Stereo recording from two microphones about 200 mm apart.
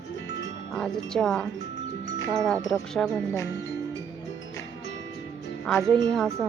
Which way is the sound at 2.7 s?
Centre (ahead or behind).